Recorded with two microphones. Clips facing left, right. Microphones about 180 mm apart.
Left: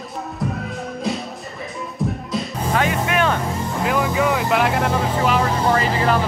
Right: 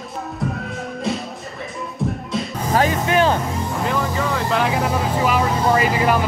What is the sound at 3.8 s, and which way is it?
Vehicle, 10° left (ahead or behind).